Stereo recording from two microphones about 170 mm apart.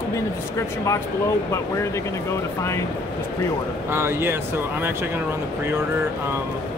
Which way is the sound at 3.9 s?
15° right (ahead or behind).